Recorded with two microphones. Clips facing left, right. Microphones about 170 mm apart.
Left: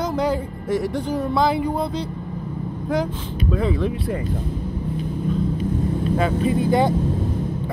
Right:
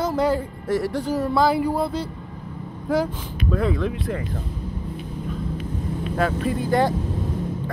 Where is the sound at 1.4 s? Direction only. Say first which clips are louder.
Even; 20° left (ahead or behind).